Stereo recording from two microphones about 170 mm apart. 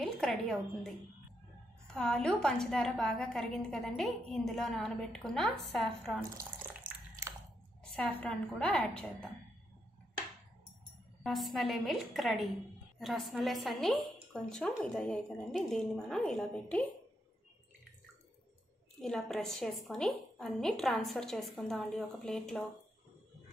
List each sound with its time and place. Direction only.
0.0 s a woman's voice: centre (ahead or behind)
2.0 s a woman's voice: 5° left (ahead or behind)
6.8 s a sound: 15° right (ahead or behind)
7.9 s a woman's voice: 5° left (ahead or behind)
11.2 s a woman's voice: centre (ahead or behind)
18.9 s a woman's voice: centre (ahead or behind)